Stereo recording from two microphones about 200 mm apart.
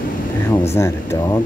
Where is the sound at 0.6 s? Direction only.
15° left (ahead or behind).